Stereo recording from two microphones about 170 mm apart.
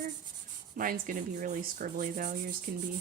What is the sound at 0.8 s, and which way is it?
Rub, 55° right (ahead or behind).